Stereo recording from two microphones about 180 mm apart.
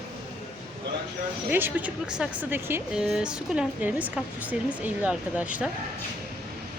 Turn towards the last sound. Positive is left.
turn(degrees=-5)  # may be behind; listen again after turning